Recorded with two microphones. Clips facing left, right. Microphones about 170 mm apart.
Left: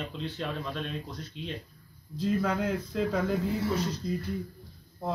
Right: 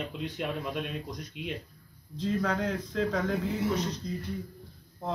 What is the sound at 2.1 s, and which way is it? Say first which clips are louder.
Speech: left 1 dB; 10° left (ahead or behind).